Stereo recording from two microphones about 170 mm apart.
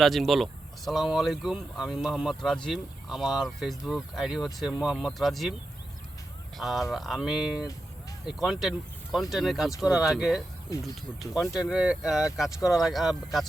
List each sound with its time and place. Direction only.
0.0 s speech: centre (ahead or behind)
6.6 s speech: centre (ahead or behind)